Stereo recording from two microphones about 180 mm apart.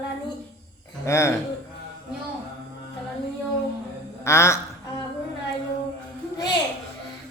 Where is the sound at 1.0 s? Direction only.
15° left (ahead or behind).